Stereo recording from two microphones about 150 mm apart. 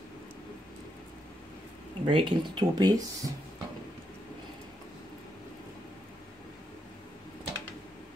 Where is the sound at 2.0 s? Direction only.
35° right (ahead or behind).